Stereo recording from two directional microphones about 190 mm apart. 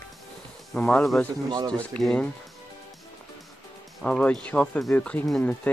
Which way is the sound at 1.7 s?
5° left (ahead or behind).